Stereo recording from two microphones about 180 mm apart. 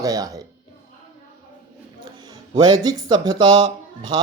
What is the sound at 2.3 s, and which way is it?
Speech, 20° right (ahead or behind).